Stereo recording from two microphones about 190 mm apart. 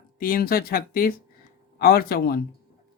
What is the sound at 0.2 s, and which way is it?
Speech, 50° left (ahead or behind).